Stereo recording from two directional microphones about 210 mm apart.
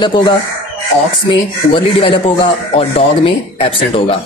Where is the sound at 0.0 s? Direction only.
20° left (ahead or behind).